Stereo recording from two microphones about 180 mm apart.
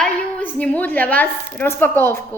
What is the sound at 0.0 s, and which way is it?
A woman's voice, 5° left (ahead or behind).